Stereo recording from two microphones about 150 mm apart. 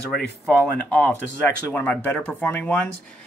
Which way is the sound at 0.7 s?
10° left (ahead or behind).